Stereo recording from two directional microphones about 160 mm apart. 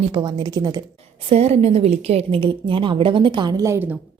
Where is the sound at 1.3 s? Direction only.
40° right (ahead or behind); by 3.9 s 15° right (ahead or behind).